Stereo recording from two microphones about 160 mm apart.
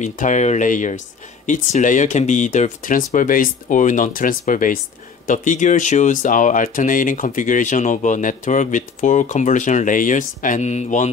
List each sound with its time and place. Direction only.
0.0 s speech: 50° left (ahead or behind)